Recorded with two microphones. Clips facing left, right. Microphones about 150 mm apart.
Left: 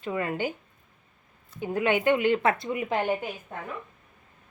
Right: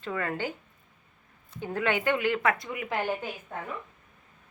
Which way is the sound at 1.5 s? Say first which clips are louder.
Left 3 dB; 15° left (ahead or behind).